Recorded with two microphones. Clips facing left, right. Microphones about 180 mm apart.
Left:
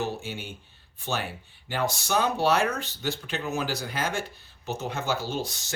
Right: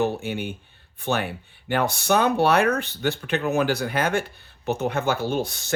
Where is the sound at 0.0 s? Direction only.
60° right (ahead or behind).